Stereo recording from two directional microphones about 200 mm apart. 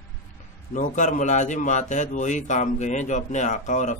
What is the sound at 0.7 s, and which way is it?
A man's voice, 40° left (ahead or behind).